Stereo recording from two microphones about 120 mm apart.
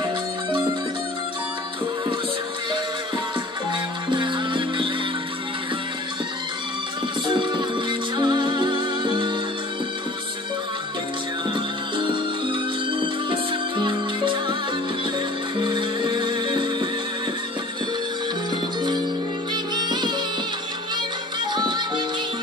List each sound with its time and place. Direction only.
0.5 s music: 40° right (ahead or behind)
4.1 s music: 40° right (ahead or behind)
7.2 s music: 40° right (ahead or behind)
11.5 s music: 40° right (ahead or behind)
19.5 s music: 35° right (ahead or behind)
21.5 s music: 40° right (ahead or behind)